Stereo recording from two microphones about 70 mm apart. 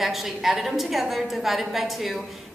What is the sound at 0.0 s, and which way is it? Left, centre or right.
A woman's voice, centre.